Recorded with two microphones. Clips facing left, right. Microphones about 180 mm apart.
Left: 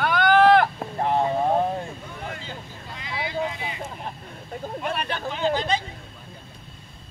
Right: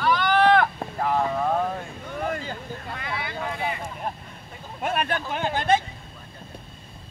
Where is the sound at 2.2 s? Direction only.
45° right (ahead or behind).